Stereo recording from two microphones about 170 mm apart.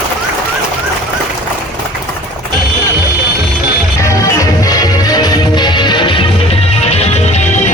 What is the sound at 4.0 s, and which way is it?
Music, 15° left (ahead or behind).